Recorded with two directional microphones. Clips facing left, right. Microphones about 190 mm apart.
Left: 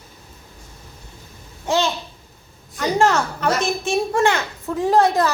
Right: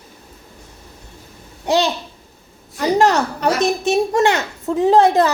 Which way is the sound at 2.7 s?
35° right (ahead or behind).